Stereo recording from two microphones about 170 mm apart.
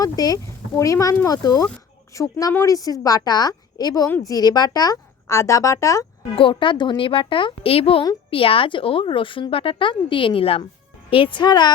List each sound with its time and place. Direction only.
0.0 s a woman's voice: 20° left (ahead or behind)
6.3 s a woman's voice: 30° left (ahead or behind)